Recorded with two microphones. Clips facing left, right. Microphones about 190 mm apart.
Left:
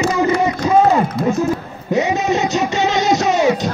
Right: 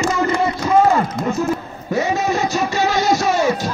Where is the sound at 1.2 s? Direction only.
50° right (ahead or behind).